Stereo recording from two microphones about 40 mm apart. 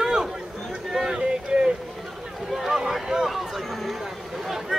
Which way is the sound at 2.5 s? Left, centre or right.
Centre.